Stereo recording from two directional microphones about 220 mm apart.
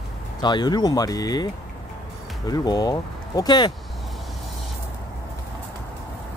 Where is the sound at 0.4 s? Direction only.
20° left (ahead or behind).